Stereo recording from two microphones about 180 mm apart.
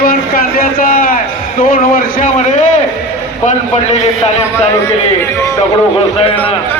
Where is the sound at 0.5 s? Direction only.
50° left (ahead or behind).